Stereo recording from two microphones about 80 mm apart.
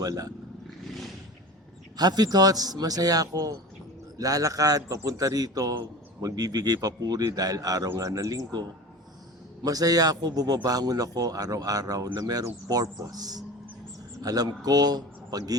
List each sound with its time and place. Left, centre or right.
0.0 s a man's voice: right
0.9 s a sound: centre
2.0 s a man's voice: right
9.6 s a man's voice: right